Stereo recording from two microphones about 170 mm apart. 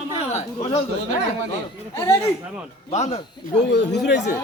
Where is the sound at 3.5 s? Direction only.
90° left.